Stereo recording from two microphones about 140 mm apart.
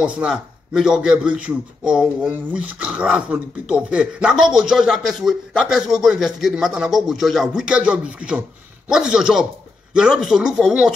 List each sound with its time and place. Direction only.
0.0 s a man's voice: 5° right (ahead or behind)